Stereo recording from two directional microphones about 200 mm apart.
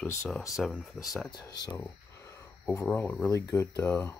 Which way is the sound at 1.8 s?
15° left (ahead or behind).